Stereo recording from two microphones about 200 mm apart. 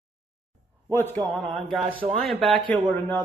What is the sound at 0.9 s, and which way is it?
Speech, 10° left (ahead or behind).